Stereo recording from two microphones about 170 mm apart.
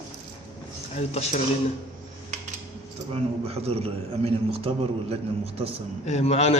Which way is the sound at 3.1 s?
35° right (ahead or behind).